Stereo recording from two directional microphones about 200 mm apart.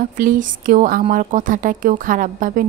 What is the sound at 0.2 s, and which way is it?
A woman's voice, 40° right (ahead or behind).